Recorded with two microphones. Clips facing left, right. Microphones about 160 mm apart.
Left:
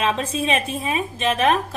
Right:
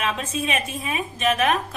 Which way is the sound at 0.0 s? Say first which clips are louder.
Left 4 dB; 30° left (ahead or behind).